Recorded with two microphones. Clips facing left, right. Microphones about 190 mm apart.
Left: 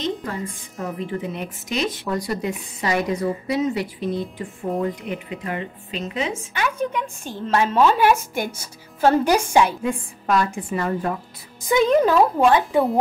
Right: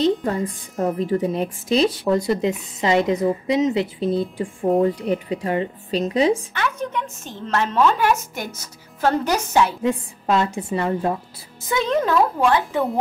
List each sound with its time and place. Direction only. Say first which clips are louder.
0.0 s a woman's voice: right 7 dB; 35° right (ahead or behind)
6.5 s a woman's voice: left 1 dB; 10° left (ahead or behind)
9.8 s a woman's voice: right 2 dB; 25° right (ahead or behind)
11.9 s a woman's voice: even; 10° left (ahead or behind)